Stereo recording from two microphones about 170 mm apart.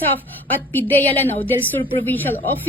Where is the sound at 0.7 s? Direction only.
10° left (ahead or behind).